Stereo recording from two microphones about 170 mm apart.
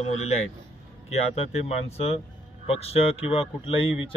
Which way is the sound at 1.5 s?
40° left (ahead or behind).